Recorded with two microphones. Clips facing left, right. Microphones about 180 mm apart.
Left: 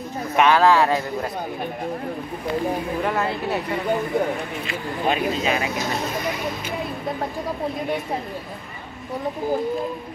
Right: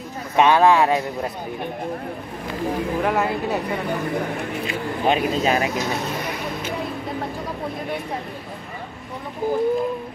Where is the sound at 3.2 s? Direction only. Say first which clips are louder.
Right 2 dB; 15° right (ahead or behind).